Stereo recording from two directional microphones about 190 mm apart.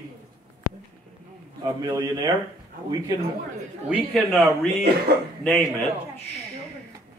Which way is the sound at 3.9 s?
Centre (ahead or behind).